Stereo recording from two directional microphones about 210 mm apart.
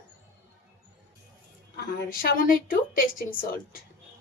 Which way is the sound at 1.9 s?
45° left (ahead or behind).